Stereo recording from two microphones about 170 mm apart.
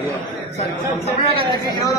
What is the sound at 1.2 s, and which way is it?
Speech, 25° left (ahead or behind).